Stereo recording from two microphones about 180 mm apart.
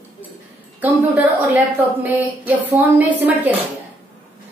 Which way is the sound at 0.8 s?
10° right (ahead or behind).